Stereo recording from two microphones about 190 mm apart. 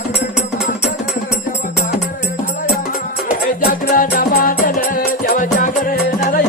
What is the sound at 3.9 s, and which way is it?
Music, 50° left (ahead or behind).